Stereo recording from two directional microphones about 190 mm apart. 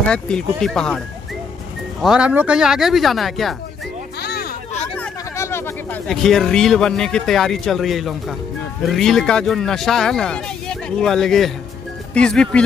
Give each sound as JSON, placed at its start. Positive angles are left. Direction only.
{"t": 0.1, "sound": "speech", "side_deg": 5}
{"t": 4.2, "sound": "a sound", "side_deg": 60}
{"t": 4.9, "sound": "hubbub", "side_deg": 10}
{"t": 6.0, "sound": "speech", "side_deg": 0}